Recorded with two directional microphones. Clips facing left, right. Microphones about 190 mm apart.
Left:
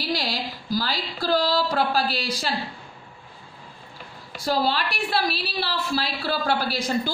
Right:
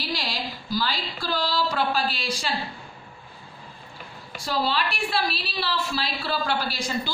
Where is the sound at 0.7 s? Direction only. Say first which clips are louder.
Left 1 dB; 45° left (ahead or behind).